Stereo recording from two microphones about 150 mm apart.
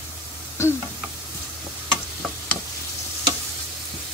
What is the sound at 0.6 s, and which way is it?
Speech, 20° left (ahead or behind).